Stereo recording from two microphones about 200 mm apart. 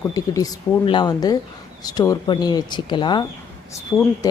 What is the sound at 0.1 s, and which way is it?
Speech, 15° left (ahead or behind).